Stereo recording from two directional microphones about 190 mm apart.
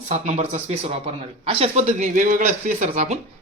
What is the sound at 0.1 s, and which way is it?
A man's voice, 35° right (ahead or behind).